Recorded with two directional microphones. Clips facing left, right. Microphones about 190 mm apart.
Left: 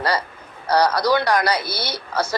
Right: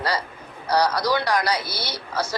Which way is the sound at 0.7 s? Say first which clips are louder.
Left 3 dB; 60° left (ahead or behind).